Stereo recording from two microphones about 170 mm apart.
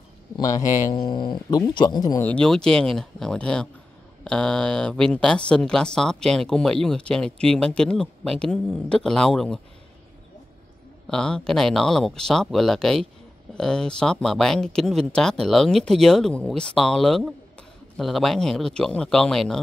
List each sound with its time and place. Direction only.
0.4 s speech: 20° left (ahead or behind)
2.2 s speech: 5° left (ahead or behind)
11.1 s speech: 5° left (ahead or behind)